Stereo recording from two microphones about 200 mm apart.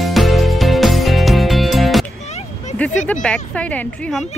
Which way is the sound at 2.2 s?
35° left (ahead or behind).